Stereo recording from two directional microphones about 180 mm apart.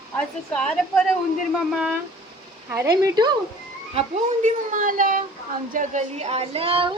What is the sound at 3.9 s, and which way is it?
A child's voice, 40° right (ahead or behind).